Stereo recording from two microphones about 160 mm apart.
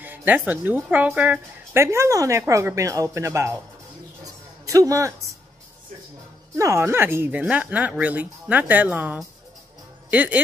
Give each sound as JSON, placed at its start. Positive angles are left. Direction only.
{"t": 0.0, "sound": "speech", "side_deg": -10}
{"t": 4.2, "sound": "a sound", "side_deg": -20}
{"t": 6.5, "sound": "speech", "side_deg": -20}